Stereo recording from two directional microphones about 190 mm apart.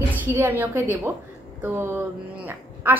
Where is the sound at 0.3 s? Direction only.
10° right (ahead or behind).